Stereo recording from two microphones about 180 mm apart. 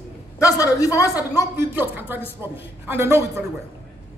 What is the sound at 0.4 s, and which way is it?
Speech, 20° left (ahead or behind).